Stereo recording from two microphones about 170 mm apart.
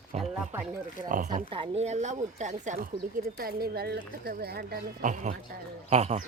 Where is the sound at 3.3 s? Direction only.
60° right (ahead or behind).